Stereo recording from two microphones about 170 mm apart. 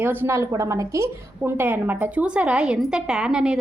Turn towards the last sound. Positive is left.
turn(degrees=-5)  # may be behind; listen again after turning